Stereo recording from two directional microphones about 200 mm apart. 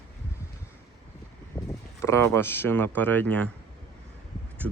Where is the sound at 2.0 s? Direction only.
15° left (ahead or behind).